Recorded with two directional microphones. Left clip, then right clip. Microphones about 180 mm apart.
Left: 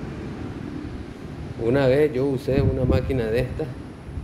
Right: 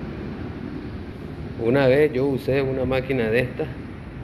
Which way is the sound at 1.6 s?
15° left (ahead or behind).